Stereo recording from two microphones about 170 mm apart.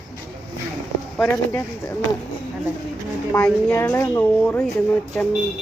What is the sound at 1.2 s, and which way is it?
Speech, 15° left (ahead or behind).